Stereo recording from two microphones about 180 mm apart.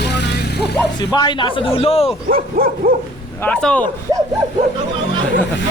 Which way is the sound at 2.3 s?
55° right (ahead or behind).